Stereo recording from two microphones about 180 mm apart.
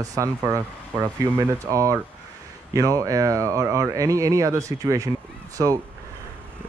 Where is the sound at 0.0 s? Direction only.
20° right (ahead or behind).